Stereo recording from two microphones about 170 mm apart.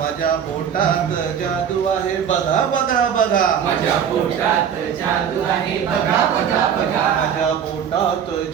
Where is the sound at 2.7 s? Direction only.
50° left (ahead or behind).